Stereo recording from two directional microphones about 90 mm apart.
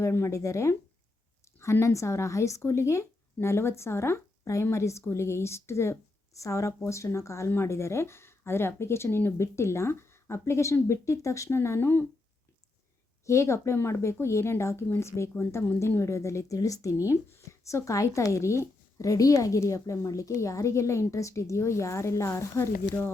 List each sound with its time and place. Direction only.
0.0 s a woman's voice: 30° left (ahead or behind)
13.2 s a woman's voice: 35° left (ahead or behind)